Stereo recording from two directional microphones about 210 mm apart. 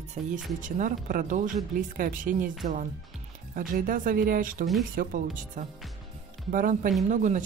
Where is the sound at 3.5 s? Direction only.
40° right (ahead or behind).